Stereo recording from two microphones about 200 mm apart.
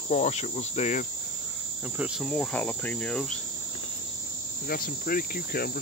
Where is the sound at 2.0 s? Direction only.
Centre (ahead or behind).